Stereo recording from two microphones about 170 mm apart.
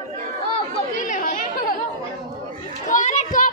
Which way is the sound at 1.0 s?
50° left (ahead or behind).